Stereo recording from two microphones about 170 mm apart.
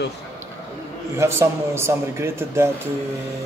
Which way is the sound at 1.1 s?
15° right (ahead or behind).